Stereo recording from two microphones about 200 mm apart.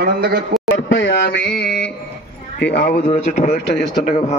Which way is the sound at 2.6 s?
55° left (ahead or behind).